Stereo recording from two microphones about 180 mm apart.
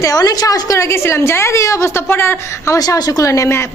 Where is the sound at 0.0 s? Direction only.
20° left (ahead or behind).